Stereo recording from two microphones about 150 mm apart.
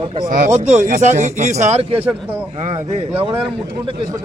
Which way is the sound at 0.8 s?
55° right (ahead or behind).